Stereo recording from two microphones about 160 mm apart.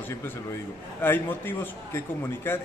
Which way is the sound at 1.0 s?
15° left (ahead or behind).